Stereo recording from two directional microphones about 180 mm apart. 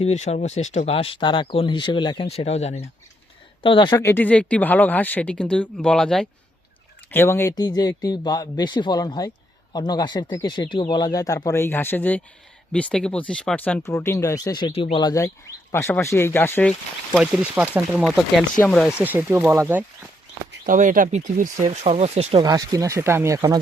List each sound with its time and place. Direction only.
0.0 s speech: 35° left (ahead or behind); by 17.2 s 10° left (ahead or behind)
17.7 s speech: 5° right (ahead or behind)
20.7 s speech: 50° right (ahead or behind)
22.4 s speech: 20° right (ahead or behind)